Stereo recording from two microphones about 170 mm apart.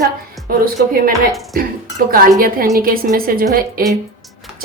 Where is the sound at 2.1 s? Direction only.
60° right (ahead or behind).